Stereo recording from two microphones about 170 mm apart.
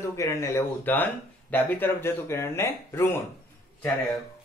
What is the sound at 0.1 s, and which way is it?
Speech, 20° left (ahead or behind).